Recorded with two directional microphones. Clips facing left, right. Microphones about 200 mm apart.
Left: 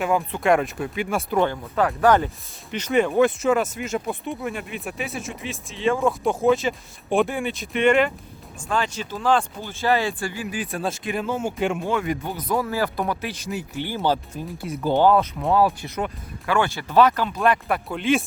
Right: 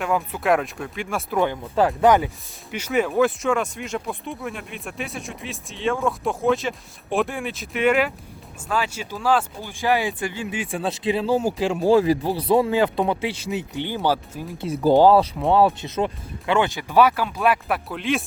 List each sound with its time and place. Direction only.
0.0 s speech: centre (ahead or behind)
1.9 s speech: 15° right (ahead or behind)
14.6 s speech: 30° right (ahead or behind); by 18.2 s centre (ahead or behind)